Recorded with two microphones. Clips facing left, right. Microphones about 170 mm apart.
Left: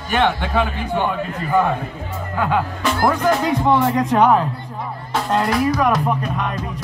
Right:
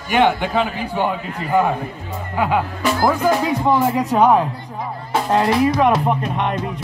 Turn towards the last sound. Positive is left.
turn(degrees=-25)  # may be behind; listen again after turning